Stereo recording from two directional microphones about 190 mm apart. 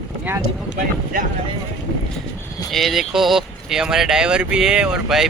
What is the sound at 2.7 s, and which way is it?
Speech, centre (ahead or behind).